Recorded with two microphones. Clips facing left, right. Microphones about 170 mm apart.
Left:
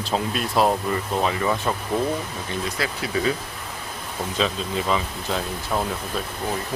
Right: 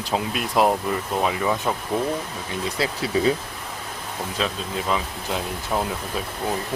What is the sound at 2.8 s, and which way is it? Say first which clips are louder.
Speech: right 4 dB; 30° right (ahead or behind).